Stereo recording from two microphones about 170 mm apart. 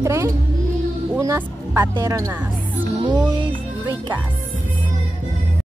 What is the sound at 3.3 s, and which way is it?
Music, 25° right (ahead or behind).